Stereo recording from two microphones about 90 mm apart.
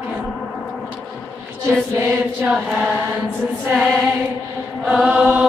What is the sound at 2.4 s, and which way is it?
Choir, 20° right (ahead or behind).